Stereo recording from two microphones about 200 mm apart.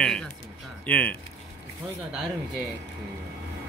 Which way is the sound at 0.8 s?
5° left (ahead or behind).